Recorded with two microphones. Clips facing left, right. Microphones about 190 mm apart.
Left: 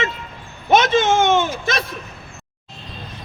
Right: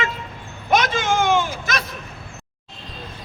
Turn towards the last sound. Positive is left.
turn(degrees=25)  # may be behind; listen again after turning